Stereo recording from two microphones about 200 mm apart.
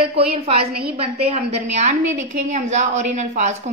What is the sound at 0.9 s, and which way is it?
A woman's voice, 30° right (ahead or behind).